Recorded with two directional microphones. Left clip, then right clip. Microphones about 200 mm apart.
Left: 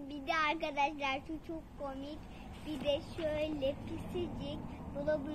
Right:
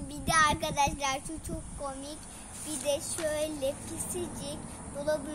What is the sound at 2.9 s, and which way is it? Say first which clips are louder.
Speech: right 4 dB; 10° right (ahead or behind).